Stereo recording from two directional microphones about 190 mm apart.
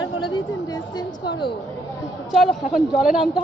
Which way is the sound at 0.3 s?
20° left (ahead or behind).